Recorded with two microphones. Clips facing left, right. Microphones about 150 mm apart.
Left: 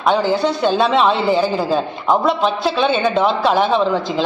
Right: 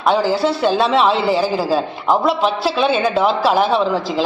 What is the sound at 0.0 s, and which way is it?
A man's voice, 5° right (ahead or behind).